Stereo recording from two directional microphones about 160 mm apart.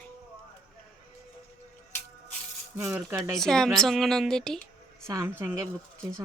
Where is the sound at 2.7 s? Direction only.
15° right (ahead or behind).